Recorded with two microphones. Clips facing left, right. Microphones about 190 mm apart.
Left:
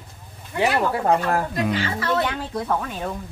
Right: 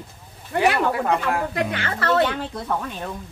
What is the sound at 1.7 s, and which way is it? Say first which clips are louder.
Speech: left 1 dB; 60° right (ahead or behind).